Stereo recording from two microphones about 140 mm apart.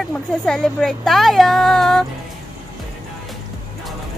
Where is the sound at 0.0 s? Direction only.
5° left (ahead or behind).